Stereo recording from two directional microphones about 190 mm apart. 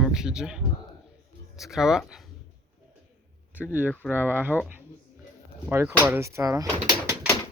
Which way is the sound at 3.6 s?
10° right (ahead or behind).